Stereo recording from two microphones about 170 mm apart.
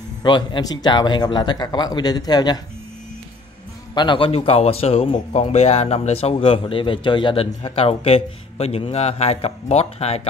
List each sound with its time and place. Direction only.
0.2 s speech: 25° left (ahead or behind)
3.9 s speech: 25° left (ahead or behind)